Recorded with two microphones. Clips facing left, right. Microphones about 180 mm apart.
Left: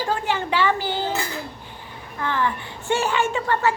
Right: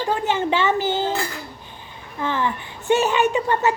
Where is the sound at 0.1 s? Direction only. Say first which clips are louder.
Right 4 dB; 20° right (ahead or behind).